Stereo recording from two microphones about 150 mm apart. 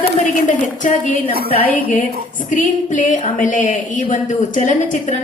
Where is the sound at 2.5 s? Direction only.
55° left (ahead or behind).